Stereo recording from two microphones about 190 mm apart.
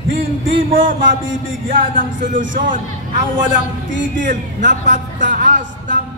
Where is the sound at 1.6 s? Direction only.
45° right (ahead or behind).